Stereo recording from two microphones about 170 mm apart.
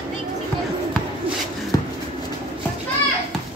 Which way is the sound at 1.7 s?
20° left (ahead or behind).